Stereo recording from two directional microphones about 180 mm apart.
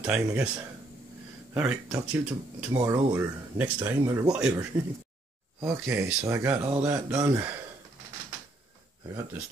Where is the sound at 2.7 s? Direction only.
15° right (ahead or behind).